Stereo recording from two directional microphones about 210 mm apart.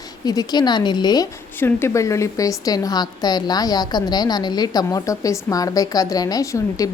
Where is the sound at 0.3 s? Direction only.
20° left (ahead or behind).